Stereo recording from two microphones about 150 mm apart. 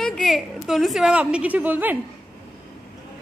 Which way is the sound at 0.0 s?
Centre (ahead or behind).